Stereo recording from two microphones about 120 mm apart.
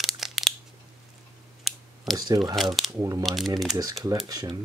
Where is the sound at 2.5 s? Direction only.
Centre (ahead or behind).